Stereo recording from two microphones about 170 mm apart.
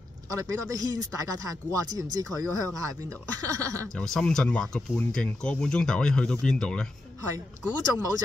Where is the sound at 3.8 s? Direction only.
5° left (ahead or behind).